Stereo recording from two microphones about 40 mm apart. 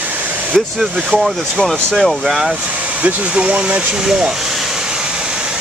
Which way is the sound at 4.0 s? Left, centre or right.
Centre.